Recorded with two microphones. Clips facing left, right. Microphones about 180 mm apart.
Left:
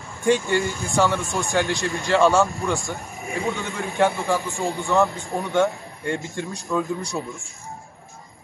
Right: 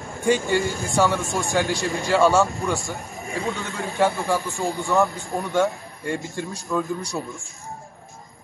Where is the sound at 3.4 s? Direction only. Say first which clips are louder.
Left 2 dB; 20° left (ahead or behind).